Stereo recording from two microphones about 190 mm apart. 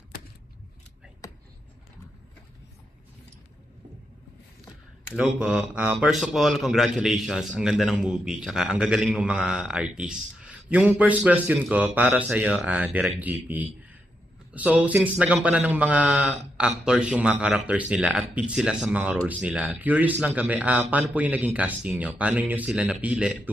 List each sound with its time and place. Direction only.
5.1 s a man's voice: 5° right (ahead or behind)